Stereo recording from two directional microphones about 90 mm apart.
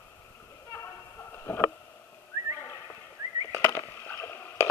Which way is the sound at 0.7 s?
30° left (ahead or behind).